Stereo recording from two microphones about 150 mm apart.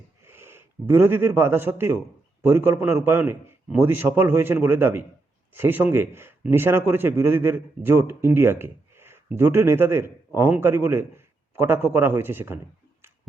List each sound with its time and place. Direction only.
0.3 s a man's voice: 15° right (ahead or behind)